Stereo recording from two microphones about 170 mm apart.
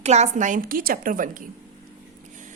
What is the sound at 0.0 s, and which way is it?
A woman's voice, 40° right (ahead or behind).